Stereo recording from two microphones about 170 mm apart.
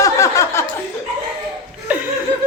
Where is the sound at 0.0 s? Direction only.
15° left (ahead or behind).